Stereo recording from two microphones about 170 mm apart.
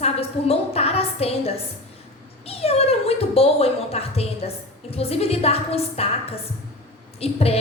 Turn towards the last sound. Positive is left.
turn(degrees=35)  # may be behind; listen again after turning